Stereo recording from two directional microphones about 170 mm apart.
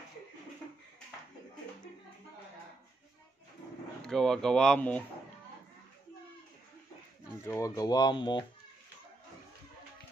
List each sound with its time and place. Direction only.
4.0 s speech: 5° left (ahead or behind)
7.4 s speech: 20° left (ahead or behind)